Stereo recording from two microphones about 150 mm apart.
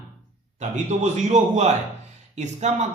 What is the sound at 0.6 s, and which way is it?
A man's voice, 50° right (ahead or behind).